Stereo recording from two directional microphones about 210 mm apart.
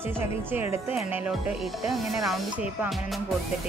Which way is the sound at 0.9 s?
5° right (ahead or behind).